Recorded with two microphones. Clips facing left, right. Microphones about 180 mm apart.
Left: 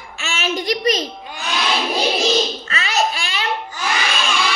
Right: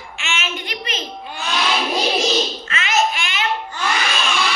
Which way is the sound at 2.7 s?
35° left (ahead or behind).